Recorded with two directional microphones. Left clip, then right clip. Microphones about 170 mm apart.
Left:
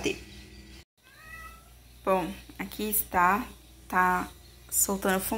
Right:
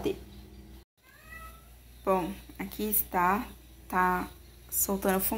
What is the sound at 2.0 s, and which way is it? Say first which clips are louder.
Speech: left 1 dB; centre (ahead or behind).